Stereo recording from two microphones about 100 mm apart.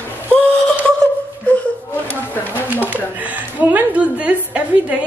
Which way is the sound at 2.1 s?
20° left (ahead or behind).